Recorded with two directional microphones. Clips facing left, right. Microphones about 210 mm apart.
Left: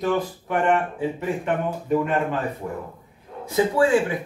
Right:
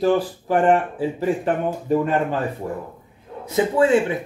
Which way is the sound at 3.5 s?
20° right (ahead or behind).